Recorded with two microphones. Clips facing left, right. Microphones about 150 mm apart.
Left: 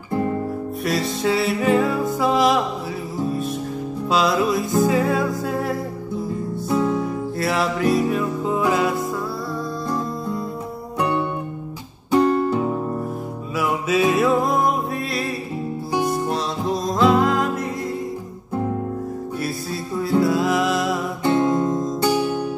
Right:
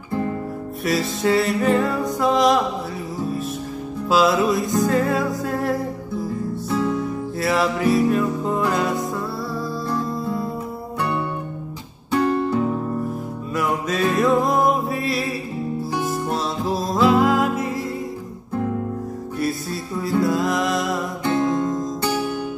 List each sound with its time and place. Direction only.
0.8 s music: centre (ahead or behind)
4.1 s music: centre (ahead or behind)
7.3 s music: centre (ahead or behind)
12.1 s music: 20° left (ahead or behind)
13.6 s music: 5° left (ahead or behind)
20.0 s music: centre (ahead or behind)
21.2 s music: 25° left (ahead or behind)